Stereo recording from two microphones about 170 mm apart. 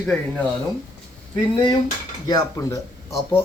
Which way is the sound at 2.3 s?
20° left (ahead or behind).